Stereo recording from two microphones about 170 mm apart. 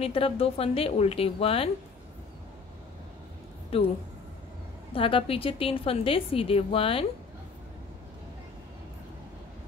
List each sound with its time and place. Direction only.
0.0 s a woman's voice: 35° left (ahead or behind)
3.7 s a woman's voice: 35° left (ahead or behind)
4.9 s a woman's voice: 30° left (ahead or behind)